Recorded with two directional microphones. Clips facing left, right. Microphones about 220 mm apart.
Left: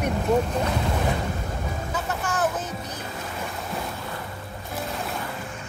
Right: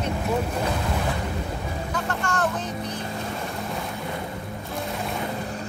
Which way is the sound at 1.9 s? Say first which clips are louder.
Right 1 dB; 5° left (ahead or behind).